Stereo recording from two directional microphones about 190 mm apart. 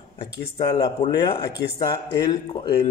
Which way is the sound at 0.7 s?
25° left (ahead or behind).